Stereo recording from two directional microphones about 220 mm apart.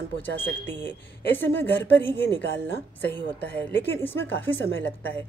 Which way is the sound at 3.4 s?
10° left (ahead or behind).